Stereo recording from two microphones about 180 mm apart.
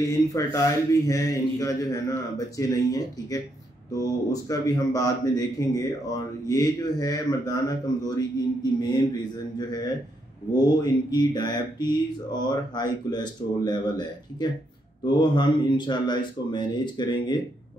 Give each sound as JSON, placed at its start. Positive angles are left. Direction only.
{"t": 0.3, "sound": "a man's voice", "side_deg": 20}
{"t": 9.6, "sound": "a man's voice", "side_deg": 20}